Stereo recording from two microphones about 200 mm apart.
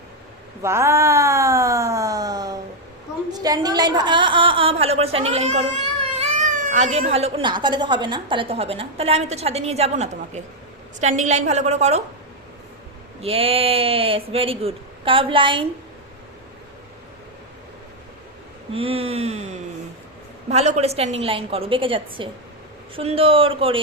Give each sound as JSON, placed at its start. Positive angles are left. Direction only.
{"t": 0.6, "sound": "a sound", "side_deg": -15}
{"t": 3.4, "sound": "speech", "side_deg": -20}
{"t": 13.2, "sound": "speech", "side_deg": -30}
{"t": 18.7, "sound": "speech", "side_deg": -30}